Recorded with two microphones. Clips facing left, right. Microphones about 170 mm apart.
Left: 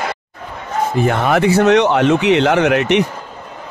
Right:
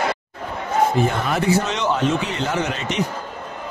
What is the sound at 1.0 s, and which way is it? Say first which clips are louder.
Speech: left 6 dB; 70° left (ahead or behind).